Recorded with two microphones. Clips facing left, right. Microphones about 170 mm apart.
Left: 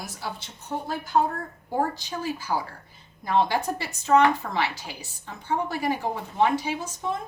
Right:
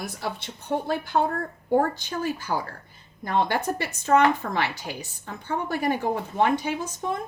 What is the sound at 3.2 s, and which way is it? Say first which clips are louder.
A woman's voice: left 1 dB; 55° right (ahead or behind).